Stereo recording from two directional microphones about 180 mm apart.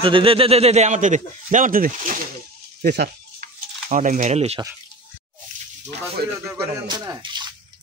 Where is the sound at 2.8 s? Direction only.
60° right (ahead or behind).